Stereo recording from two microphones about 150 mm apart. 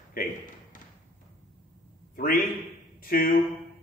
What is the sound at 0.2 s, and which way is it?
Speech, 70° left (ahead or behind).